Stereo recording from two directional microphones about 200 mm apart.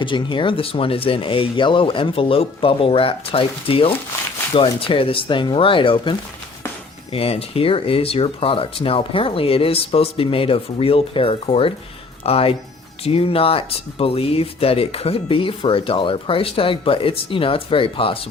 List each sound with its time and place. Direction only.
0.0 s speech: 25° left (ahead or behind)